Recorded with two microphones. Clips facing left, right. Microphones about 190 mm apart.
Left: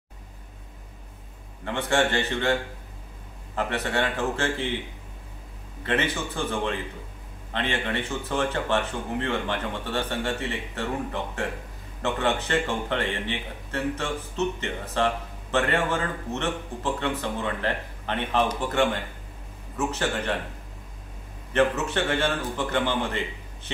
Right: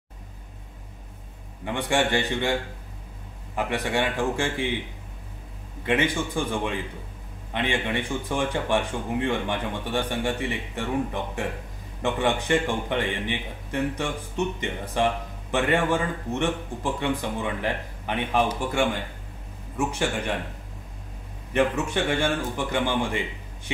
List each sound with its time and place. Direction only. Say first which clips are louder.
1.6 s speech: even; 15° right (ahead or behind)
3.5 s speech: right 1 dB; 15° right (ahead or behind)
5.9 s speech: right 3 dB; 15° right (ahead or behind)
19.9 s speech: left 2 dB; 15° right (ahead or behind)
21.5 s speech: even; 15° right (ahead or behind)